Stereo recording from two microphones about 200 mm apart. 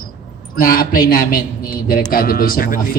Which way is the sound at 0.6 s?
45° left (ahead or behind).